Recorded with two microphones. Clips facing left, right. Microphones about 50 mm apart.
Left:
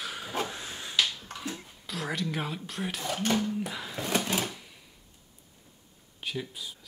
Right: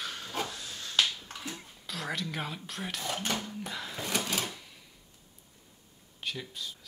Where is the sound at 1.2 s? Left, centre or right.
Centre.